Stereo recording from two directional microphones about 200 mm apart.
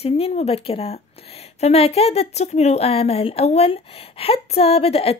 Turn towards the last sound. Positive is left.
turn(degrees=30)  # may be behind; listen again after turning